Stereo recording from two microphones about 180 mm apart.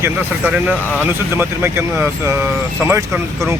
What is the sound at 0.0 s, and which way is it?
Speech, 10° right (ahead or behind).